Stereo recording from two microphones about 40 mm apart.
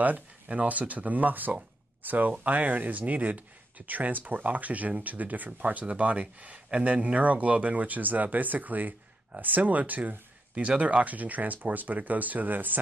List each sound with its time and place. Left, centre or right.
0.0 s speech: right